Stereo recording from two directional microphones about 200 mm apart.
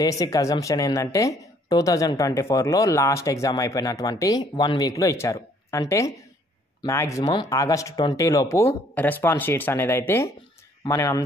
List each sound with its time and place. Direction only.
0.0 s speech: 15° left (ahead or behind)